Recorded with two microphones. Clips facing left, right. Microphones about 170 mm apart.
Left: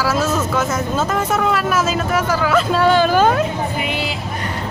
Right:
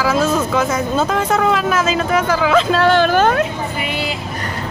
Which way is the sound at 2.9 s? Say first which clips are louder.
Right 1 dB; 55° right (ahead or behind).